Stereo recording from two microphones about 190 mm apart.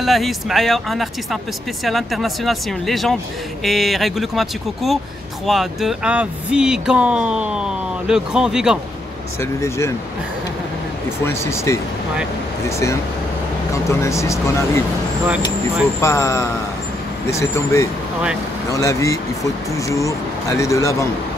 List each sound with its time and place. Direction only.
0.0 s speech: centre (ahead or behind)
9.4 s speech: 15° left (ahead or behind)
11.2 s speech: 15° left (ahead or behind)
13.8 s speech: 15° left (ahead or behind)
16.0 s speech: 15° left (ahead or behind)